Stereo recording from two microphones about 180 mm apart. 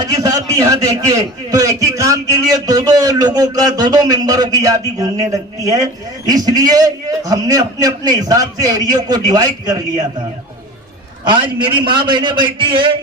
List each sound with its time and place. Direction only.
0.0 s a man's voice: 20° right (ahead or behind)
11.3 s a man's voice: 25° right (ahead or behind)